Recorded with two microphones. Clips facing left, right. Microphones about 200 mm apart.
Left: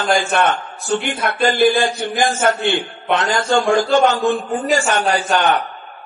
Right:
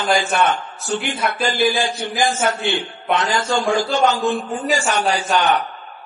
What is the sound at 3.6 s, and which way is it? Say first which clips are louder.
Speech: left 3 dB; centre (ahead or behind).